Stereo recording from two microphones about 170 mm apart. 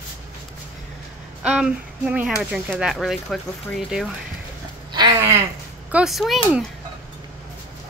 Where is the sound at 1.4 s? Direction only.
5° right (ahead or behind).